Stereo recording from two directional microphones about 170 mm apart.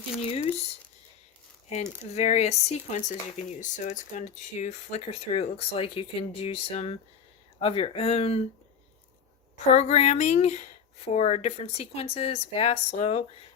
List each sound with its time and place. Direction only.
0.2 s speech: 35° left (ahead or behind)
1.7 s speech: 40° left (ahead or behind)
9.7 s speech: 40° left (ahead or behind)